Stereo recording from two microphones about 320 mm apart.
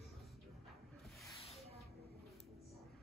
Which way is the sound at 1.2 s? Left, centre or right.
Centre.